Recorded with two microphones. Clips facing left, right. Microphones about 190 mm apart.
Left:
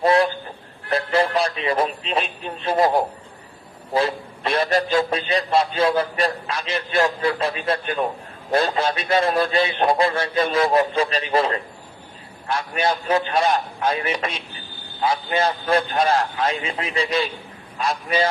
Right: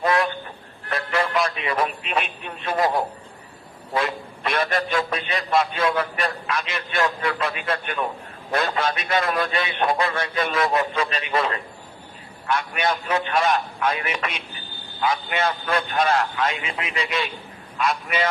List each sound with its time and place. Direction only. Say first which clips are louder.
0.0 s vehicle: left 4 dB; 30° left (ahead or behind)
0.9 s a man's voice: left 5 dB; 30° left (ahead or behind)